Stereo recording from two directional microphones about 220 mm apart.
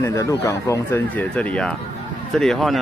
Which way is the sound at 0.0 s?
15° left (ahead or behind).